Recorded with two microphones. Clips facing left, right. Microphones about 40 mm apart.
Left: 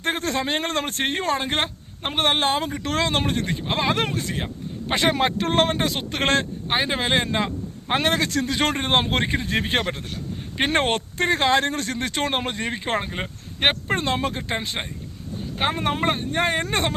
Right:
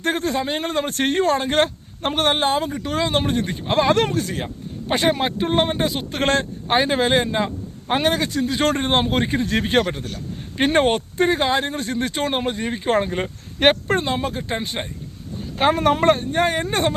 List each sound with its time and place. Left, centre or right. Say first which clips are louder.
0.2 s speech: right 2 dB; left
0.9 s speech: right 8 dB; left
2.8 s speech: right 2 dB; left
3.7 s speech: right 6 dB; left
4.9 s speech: right 2 dB; left
5.4 s speech: right 1 dB; left
5.7 s speech: right 2 dB; left
8.6 s speech: right 3 dB; left
10.7 s speech: right 5 dB; left
11.9 s speech: right 2 dB; left
13.1 s speech: right 4 dB; centre
14.0 s speech: right 1 dB; left
15.5 s speech: right 6 dB; centre
16.3 s speech: right 2 dB; left